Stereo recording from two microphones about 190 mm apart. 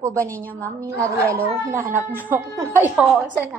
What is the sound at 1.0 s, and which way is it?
A woman's voice, 15° right (ahead or behind).